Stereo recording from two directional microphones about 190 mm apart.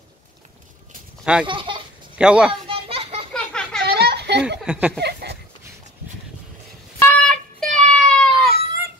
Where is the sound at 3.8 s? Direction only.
55° right (ahead or behind).